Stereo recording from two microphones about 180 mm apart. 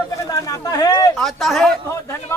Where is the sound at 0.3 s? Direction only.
20° left (ahead or behind).